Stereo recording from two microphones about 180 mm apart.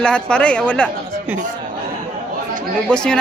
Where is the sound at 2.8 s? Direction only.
5° left (ahead or behind).